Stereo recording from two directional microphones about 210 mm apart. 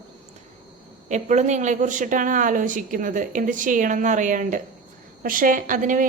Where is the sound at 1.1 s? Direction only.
35° right (ahead or behind).